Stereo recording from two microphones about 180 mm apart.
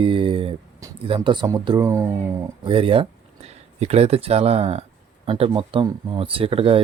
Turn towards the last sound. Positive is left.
turn(degrees=-30)  # may be behind; listen again after turning